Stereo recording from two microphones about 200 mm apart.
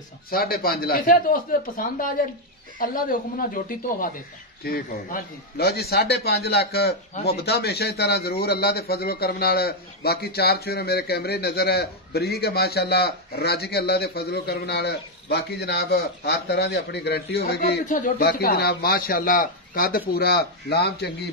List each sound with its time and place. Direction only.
0.3 s a man's voice: 45° left (ahead or behind)
17.8 s a man's voice: 40° left (ahead or behind)